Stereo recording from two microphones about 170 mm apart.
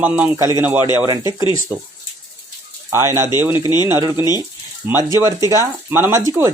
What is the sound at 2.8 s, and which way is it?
Speech, 15° right (ahead or behind).